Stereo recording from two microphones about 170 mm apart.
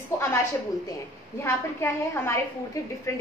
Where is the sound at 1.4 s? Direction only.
15° left (ahead or behind).